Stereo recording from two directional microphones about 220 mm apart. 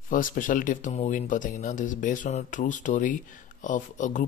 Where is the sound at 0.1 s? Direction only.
40° left (ahead or behind).